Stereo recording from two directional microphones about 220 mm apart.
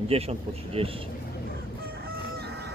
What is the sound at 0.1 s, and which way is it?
Speech, 25° right (ahead or behind).